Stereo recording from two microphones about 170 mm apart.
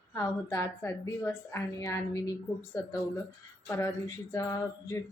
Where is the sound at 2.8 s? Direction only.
20° left (ahead or behind).